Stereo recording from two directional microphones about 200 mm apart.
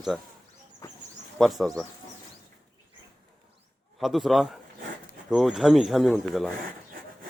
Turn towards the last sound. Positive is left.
turn(degrees=0)  # may be behind; listen again after turning